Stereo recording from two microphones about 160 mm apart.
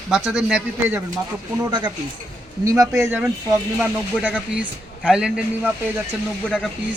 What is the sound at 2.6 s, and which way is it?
Speech, 20° right (ahead or behind).